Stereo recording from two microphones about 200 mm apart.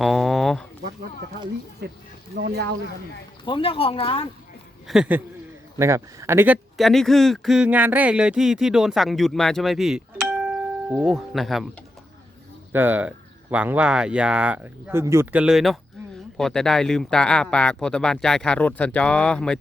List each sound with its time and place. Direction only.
0.0 s a sound: centre (ahead or behind)
2.3 s speech: 55° right (ahead or behind)
3.4 s speech: 25° left (ahead or behind)
4.9 s speech: 5° right (ahead or behind)
12.7 s speech: 10° right (ahead or behind)